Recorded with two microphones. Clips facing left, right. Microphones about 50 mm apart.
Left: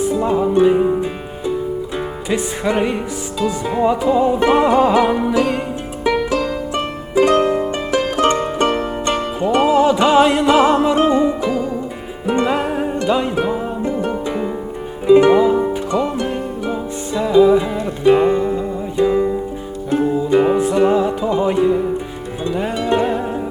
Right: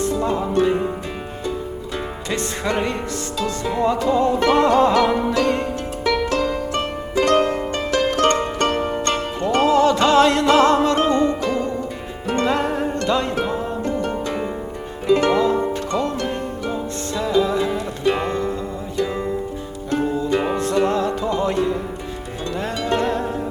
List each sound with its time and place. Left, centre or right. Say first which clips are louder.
0.0 s music: left 4 dB; centre
2.3 s music: left 4 dB; centre